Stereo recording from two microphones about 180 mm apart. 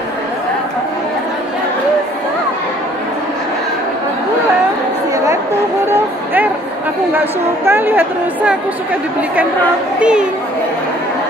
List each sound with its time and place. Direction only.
5.1 s a sound: 15° right (ahead or behind)
5.9 s music: 10° right (ahead or behind)
7.2 s a woman's voice: 10° right (ahead or behind)
9.9 s a child's voice: 5° right (ahead or behind)